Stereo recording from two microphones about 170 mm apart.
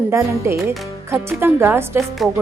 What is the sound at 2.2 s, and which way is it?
Music, 5° right (ahead or behind).